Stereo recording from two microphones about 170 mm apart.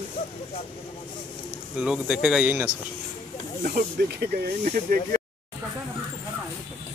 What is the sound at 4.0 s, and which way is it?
Speech, 65° right (ahead or behind).